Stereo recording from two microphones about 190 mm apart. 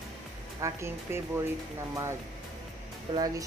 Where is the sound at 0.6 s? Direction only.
15° right (ahead or behind).